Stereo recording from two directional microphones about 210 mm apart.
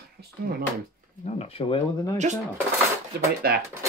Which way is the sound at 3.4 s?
45° right (ahead or behind).